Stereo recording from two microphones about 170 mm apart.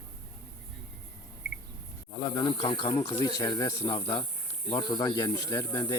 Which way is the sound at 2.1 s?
25° left (ahead or behind).